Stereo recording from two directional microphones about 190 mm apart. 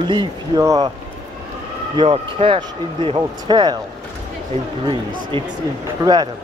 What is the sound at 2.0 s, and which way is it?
Speech, 30° right (ahead or behind).